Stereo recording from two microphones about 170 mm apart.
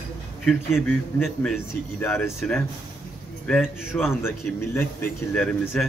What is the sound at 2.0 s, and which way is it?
A man's voice, 15° left (ahead or behind).